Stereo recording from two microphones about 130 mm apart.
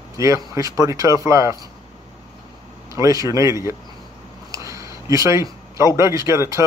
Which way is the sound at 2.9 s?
25° right (ahead or behind).